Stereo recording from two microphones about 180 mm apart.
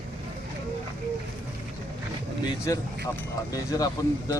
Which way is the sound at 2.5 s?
20° left (ahead or behind).